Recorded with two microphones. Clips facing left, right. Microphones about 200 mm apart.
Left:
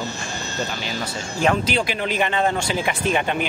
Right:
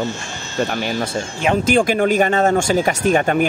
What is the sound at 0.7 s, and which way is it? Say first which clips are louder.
Speech: right 7 dB; 55° right (ahead or behind).